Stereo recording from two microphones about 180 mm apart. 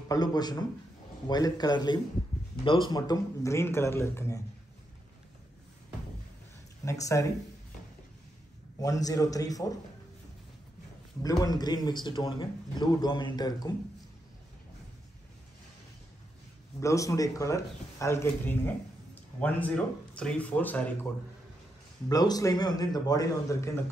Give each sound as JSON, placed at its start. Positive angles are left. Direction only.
{"t": 0.1, "sound": "speech", "side_deg": 20}
{"t": 6.8, "sound": "speech", "side_deg": 15}
{"t": 8.8, "sound": "speech", "side_deg": 20}
{"t": 11.2, "sound": "speech", "side_deg": 20}
{"t": 16.8, "sound": "speech", "side_deg": 15}
{"t": 22.1, "sound": "speech", "side_deg": 20}